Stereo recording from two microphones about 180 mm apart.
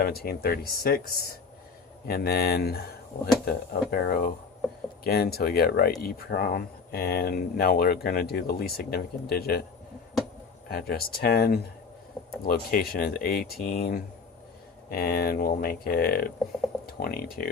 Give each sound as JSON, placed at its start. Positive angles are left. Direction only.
{"t": 0.0, "sound": "speech", "side_deg": 60}
{"t": 10.7, "sound": "speech", "side_deg": 60}